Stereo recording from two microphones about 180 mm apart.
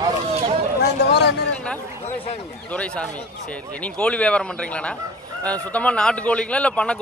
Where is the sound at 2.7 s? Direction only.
5° left (ahead or behind).